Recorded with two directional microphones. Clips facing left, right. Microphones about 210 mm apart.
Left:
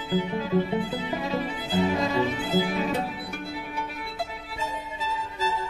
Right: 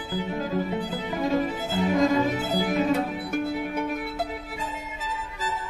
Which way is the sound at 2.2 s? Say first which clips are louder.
Right 1 dB; 45° right (ahead or behind).